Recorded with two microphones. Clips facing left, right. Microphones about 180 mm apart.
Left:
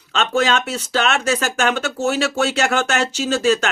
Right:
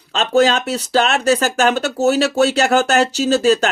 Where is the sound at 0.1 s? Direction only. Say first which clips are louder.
Right 4 dB; 35° right (ahead or behind).